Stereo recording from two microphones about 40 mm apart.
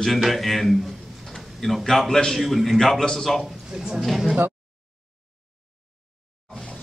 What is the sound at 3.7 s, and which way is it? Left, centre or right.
Speech, centre.